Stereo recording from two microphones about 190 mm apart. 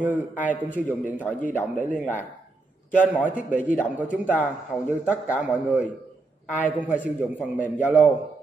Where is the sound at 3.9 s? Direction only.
10° right (ahead or behind).